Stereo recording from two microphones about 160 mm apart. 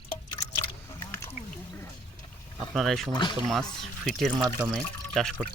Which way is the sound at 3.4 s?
Centre (ahead or behind).